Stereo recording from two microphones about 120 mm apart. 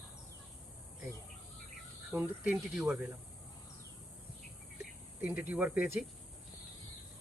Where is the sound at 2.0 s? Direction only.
15° right (ahead or behind).